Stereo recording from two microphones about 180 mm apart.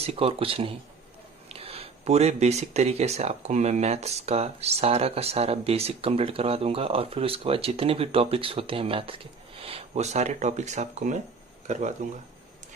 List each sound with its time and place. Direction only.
0.0 s speech: 35° right (ahead or behind)